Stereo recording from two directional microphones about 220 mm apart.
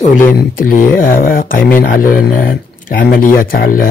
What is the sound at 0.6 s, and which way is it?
Speech, 40° left (ahead or behind).